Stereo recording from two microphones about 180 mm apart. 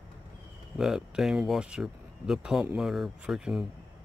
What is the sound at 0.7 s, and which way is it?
Speech, centre (ahead or behind).